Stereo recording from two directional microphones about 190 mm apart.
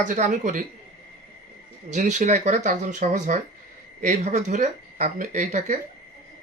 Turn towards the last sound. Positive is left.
turn(degrees=-40)  # may be behind; listen again after turning